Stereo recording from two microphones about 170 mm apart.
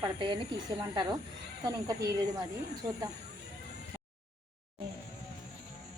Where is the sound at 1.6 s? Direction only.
20° right (ahead or behind).